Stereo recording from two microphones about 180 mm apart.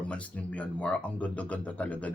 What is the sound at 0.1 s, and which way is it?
Speech, 5° left (ahead or behind).